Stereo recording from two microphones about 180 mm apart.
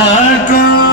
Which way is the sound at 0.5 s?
55° left (ahead or behind).